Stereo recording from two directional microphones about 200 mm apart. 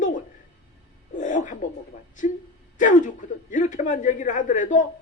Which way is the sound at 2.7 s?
40° left (ahead or behind).